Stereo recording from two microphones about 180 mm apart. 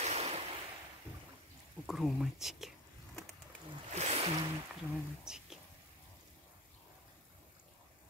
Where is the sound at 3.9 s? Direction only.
35° right (ahead or behind).